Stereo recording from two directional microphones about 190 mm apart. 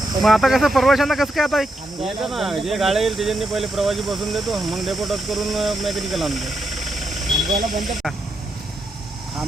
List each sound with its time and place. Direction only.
0.2 s speech: centre (ahead or behind)
7.5 s speech: 45° right (ahead or behind)